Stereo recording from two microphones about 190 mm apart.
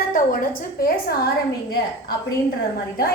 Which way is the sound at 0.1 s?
45° left (ahead or behind).